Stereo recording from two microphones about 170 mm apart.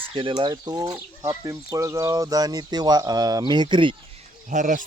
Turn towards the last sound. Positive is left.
turn(degrees=-50)  # may be behind; listen again after turning